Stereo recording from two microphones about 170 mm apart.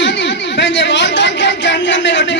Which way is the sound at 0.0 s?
90° left.